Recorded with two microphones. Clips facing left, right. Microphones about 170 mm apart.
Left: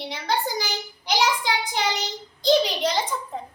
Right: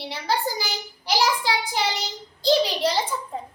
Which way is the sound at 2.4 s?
5° right (ahead or behind).